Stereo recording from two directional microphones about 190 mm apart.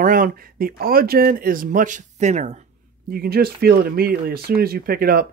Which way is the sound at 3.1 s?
55° right (ahead or behind).